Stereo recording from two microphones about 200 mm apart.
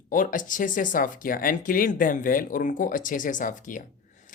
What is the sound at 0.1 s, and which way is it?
Speech, 40° left (ahead or behind).